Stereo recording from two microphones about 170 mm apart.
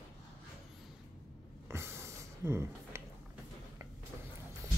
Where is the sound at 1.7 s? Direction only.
15° right (ahead or behind).